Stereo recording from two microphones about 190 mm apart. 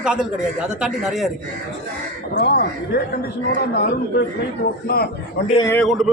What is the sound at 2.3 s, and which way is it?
Speech, 60° left (ahead or behind).